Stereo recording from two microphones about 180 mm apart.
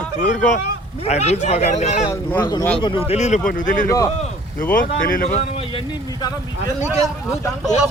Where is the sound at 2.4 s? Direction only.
20° left (ahead or behind); by 5.4 s 50° left (ahead or behind).